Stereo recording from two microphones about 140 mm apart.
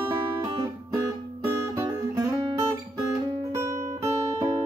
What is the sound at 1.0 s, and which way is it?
Music, 20° right (ahead or behind).